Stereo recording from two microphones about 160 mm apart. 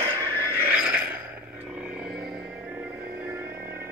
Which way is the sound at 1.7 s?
5° right (ahead or behind).